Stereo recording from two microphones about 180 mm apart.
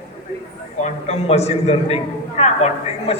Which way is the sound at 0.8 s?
40° left (ahead or behind).